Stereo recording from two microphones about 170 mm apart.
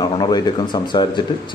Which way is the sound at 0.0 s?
25° left (ahead or behind).